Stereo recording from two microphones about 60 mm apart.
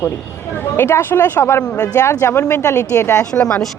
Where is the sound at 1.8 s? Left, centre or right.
Left.